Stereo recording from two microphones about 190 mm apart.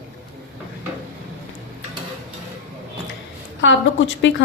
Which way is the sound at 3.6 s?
70° left (ahead or behind).